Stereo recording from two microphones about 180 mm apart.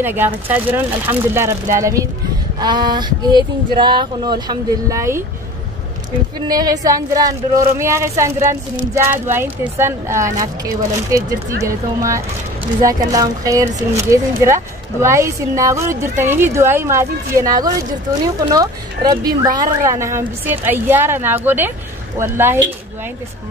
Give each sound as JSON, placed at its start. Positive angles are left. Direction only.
{"t": 0.0, "sound": "a woman's voice", "side_deg": -10}
{"t": 6.4, "sound": "a woman's voice", "side_deg": -20}